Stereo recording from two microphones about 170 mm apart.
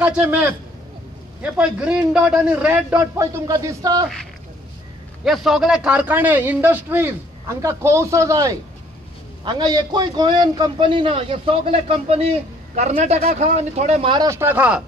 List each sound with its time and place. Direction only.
0.0 s a man's voice: 10° right (ahead or behind)
5.2 s a man's voice: centre (ahead or behind); by 14.1 s 40° right (ahead or behind)
14.1 s a man's voice: 20° right (ahead or behind)